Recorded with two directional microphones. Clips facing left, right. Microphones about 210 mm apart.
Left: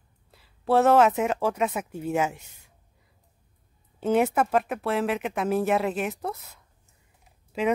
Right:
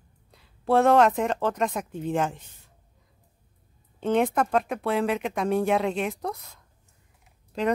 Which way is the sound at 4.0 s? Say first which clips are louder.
Left 1 dB; 5° left (ahead or behind).